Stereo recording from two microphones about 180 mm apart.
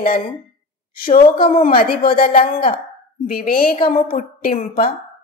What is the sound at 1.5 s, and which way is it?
A woman's voice, 50° left (ahead or behind).